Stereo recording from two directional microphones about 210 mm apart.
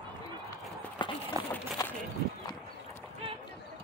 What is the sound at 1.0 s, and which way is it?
Speech, 20° left (ahead or behind).